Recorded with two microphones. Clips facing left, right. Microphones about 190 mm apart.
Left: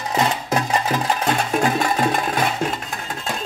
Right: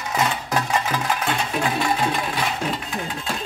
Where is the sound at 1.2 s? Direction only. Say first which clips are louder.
Left 4 dB; 45° left (ahead or behind).